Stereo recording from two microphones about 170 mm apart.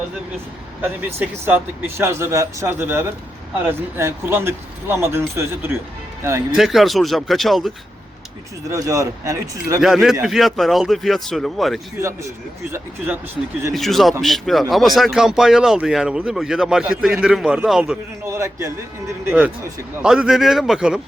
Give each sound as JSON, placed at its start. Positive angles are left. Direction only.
{"t": 0.8, "sound": "speech", "side_deg": -10}
{"t": 6.6, "sound": "speech", "side_deg": 0}
{"t": 8.7, "sound": "speech", "side_deg": -20}
{"t": 9.8, "sound": "speech", "side_deg": 0}
{"t": 13.7, "sound": "speech", "side_deg": 0}
{"t": 18.3, "sound": "speech", "side_deg": -15}